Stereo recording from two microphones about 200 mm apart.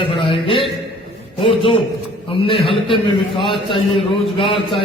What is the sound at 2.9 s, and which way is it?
Speech, centre (ahead or behind).